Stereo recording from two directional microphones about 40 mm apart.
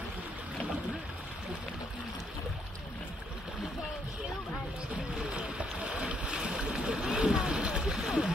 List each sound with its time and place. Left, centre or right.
5.1 s boat: right
6.9 s splash: right